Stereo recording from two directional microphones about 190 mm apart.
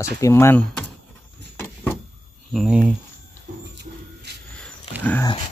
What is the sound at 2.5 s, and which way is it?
Speech, centre (ahead or behind).